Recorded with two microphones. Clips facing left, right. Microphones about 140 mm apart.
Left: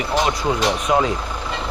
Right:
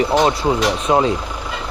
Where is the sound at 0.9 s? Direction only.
25° right (ahead or behind).